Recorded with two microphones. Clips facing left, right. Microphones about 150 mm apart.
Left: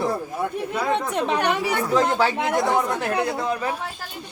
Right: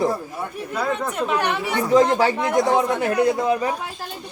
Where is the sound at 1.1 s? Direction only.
30° left (ahead or behind).